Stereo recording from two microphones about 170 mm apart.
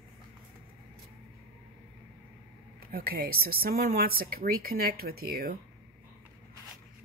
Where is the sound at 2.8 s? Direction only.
60° right (ahead or behind).